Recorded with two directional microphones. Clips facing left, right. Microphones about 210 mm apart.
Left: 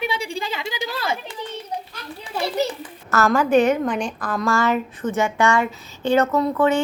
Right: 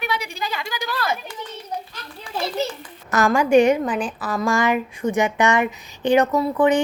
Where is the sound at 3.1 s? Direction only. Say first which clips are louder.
Right 1 dB; 15° right (ahead or behind).